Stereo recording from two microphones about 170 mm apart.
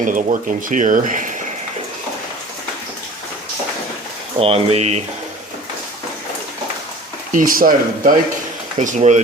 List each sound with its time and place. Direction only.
0.0 s speech: 50° right (ahead or behind)
4.4 s speech: 35° right (ahead or behind)
7.3 s speech: 55° right (ahead or behind)